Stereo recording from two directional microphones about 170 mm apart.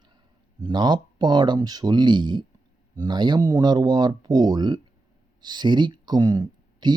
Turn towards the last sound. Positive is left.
turn(degrees=-25)  # may be behind; listen again after turning